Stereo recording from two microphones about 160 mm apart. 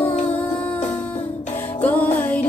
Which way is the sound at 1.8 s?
10° left (ahead or behind).